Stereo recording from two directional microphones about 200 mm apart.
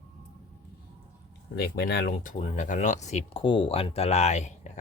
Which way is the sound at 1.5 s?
50° left (ahead or behind).